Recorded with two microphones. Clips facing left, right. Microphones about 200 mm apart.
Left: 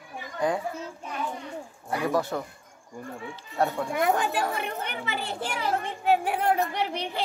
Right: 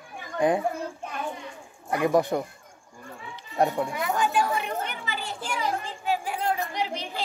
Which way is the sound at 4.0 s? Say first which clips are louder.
Left 2 dB; 55° left (ahead or behind).